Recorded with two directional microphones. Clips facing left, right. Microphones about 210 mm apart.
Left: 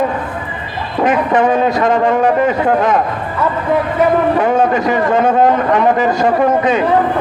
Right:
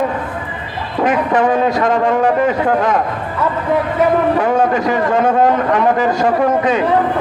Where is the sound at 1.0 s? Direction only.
20° left (ahead or behind).